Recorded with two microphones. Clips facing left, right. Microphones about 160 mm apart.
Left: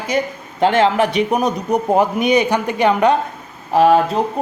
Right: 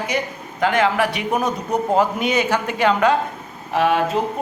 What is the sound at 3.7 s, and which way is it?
Speech, 35° left (ahead or behind).